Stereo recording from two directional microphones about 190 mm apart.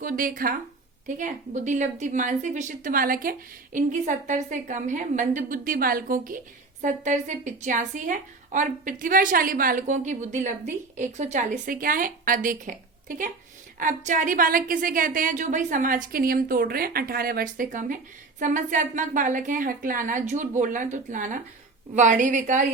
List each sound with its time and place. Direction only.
0.0 s a woman's voice: 45° right (ahead or behind)